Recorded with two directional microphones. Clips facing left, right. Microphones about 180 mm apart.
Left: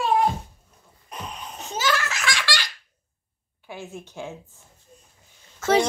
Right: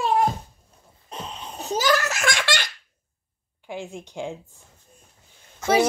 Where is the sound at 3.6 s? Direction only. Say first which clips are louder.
Right 3 dB; 15° right (ahead or behind).